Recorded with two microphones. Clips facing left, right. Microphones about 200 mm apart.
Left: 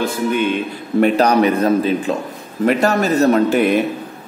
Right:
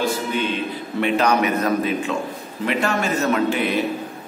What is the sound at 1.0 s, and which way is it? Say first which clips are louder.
A man's voice: left 5 dB; 35° left (ahead or behind).